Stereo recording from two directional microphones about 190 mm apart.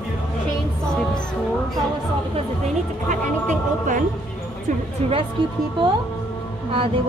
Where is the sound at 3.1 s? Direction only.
40° right (ahead or behind).